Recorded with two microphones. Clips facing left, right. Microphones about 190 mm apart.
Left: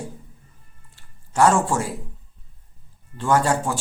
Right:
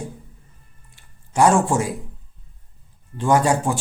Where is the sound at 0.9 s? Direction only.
15° right (ahead or behind).